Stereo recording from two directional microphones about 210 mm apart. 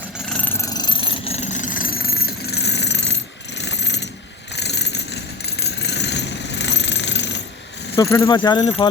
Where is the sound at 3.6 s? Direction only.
55° left (ahead or behind).